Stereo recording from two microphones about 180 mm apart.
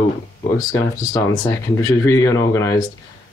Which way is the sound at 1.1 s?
15° left (ahead or behind).